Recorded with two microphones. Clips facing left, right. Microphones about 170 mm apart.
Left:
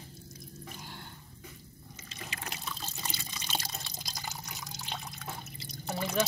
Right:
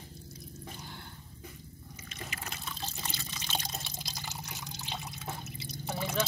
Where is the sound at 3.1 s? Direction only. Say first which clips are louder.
Left 4 dB; 10° left (ahead or behind).